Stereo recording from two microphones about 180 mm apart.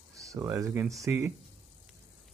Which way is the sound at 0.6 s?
10° right (ahead or behind).